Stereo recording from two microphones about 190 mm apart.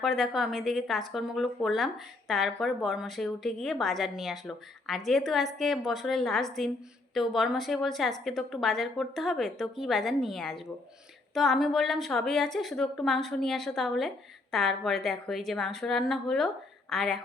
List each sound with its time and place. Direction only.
0.0 s speech: centre (ahead or behind)